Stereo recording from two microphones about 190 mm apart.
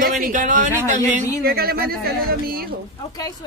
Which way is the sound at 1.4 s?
55° right (ahead or behind).